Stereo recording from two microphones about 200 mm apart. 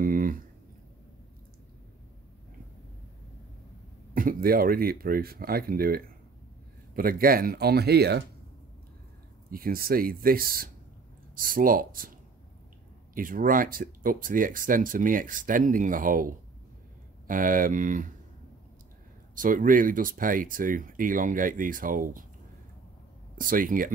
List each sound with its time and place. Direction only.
0.0 s a sound: 45° right (ahead or behind)
4.1 s speech: 45° right (ahead or behind)
9.5 s speech: 45° right (ahead or behind)
13.1 s speech: 45° right (ahead or behind)
19.3 s speech: 40° right (ahead or behind)
23.3 s speech: 45° right (ahead or behind)